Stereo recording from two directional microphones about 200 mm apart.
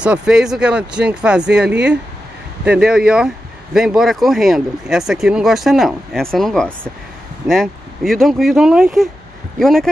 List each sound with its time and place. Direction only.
0.0 s speech: 5° right (ahead or behind)